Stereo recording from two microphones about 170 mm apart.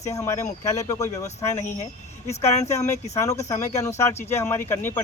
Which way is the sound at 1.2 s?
40° left (ahead or behind).